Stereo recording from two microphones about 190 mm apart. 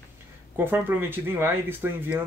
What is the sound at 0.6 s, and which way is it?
Speech, 10° right (ahead or behind).